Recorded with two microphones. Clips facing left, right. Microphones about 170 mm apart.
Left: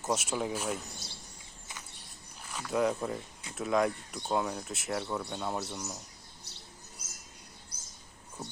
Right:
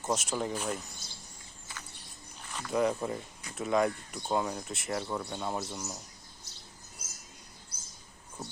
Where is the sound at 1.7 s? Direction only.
20° left (ahead or behind).